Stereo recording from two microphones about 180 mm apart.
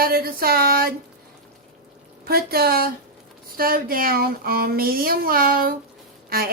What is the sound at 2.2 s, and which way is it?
Speech, 60° right (ahead or behind).